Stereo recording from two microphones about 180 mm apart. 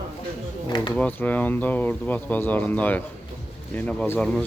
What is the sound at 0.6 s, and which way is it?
Speech, 25° left (ahead or behind).